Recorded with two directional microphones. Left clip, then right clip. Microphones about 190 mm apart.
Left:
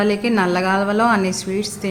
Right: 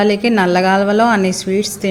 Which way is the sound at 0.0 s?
20° right (ahead or behind).